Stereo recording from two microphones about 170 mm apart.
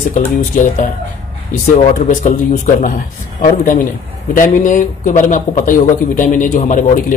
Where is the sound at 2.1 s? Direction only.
50° left (ahead or behind).